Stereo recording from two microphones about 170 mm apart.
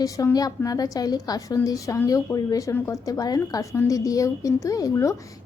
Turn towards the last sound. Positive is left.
turn(degrees=20)  # may be behind; listen again after turning